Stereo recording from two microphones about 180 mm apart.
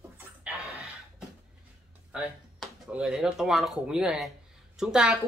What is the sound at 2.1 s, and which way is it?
A woman's voice, 5° right (ahead or behind).